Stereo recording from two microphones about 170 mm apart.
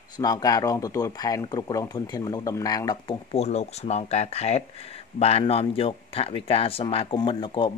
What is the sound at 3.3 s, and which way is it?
Speech, 40° left (ahead or behind).